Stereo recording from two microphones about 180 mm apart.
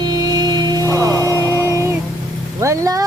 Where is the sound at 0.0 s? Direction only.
20° right (ahead or behind).